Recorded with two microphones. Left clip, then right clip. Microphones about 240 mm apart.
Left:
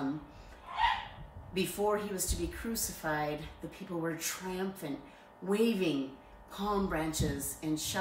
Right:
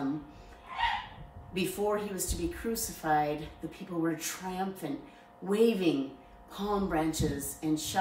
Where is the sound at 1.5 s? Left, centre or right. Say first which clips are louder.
Right 1 dB; centre.